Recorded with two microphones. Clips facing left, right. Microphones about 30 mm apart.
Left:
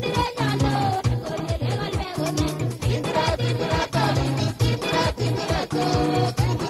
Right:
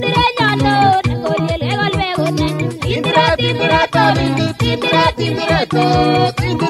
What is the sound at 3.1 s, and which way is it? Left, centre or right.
Music, right.